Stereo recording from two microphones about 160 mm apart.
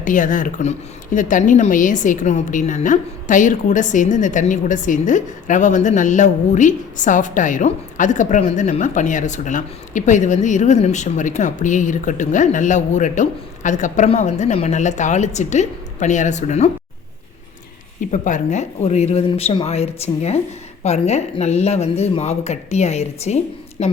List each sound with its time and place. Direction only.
0.0 s a woman's voice: 55° left (ahead or behind)
18.1 s a woman's voice: 50° left (ahead or behind)